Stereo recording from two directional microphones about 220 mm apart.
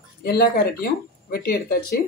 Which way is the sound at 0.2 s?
45° left (ahead or behind).